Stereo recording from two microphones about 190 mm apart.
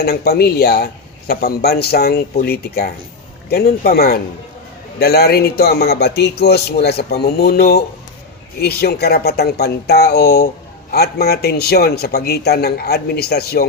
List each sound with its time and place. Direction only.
0.0 s a man's voice: 55° left (ahead or behind)